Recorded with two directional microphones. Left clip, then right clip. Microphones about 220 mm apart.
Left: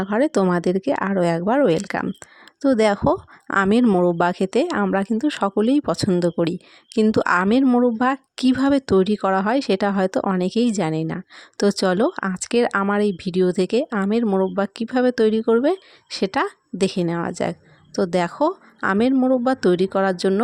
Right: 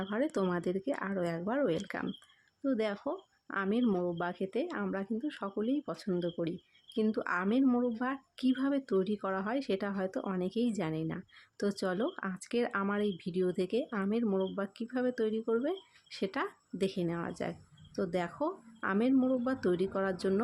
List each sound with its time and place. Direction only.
0.0 s speech: 40° left (ahead or behind)